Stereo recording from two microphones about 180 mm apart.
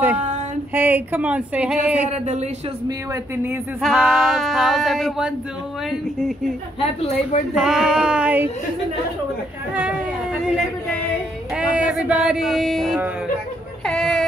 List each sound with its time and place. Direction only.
0.7 s speech: 10° right (ahead or behind)
2.0 s speech: 40° right (ahead or behind)
3.8 s male singing: centre (ahead or behind)
6.8 s a woman's voice: 35° left (ahead or behind)
7.5 s male singing: 5° right (ahead or behind)
11.5 s speech: 5° right (ahead or behind)
13.8 s male singing: centre (ahead or behind)